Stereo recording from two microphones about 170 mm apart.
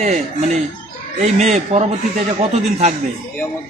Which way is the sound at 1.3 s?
45° right (ahead or behind).